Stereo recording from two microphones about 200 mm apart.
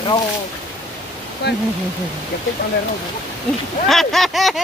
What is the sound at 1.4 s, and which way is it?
Speech, 55° left (ahead or behind).